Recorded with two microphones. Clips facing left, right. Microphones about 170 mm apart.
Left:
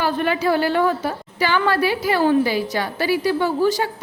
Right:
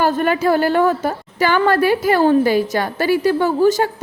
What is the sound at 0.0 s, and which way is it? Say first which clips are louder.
A woman's voice: right 4 dB; 45° right (ahead or behind).